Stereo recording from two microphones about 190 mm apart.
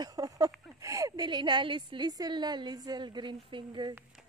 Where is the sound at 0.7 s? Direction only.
15° right (ahead or behind).